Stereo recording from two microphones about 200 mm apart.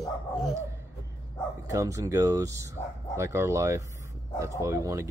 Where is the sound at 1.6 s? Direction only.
15° right (ahead or behind).